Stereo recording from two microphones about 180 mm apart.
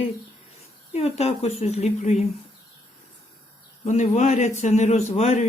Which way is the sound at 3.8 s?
40° left (ahead or behind).